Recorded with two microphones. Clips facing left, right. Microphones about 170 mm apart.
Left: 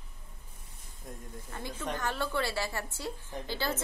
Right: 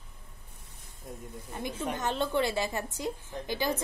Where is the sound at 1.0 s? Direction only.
Centre (ahead or behind).